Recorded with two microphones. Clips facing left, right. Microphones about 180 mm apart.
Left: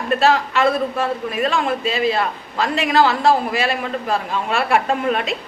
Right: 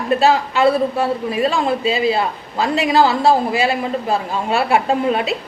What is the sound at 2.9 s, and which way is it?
A man's voice, 35° right (ahead or behind).